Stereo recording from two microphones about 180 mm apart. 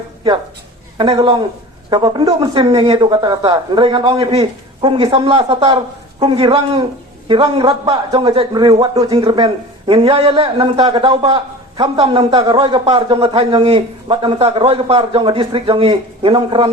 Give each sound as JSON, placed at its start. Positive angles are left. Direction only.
{"t": 0.9, "sound": "a man's voice", "side_deg": -25}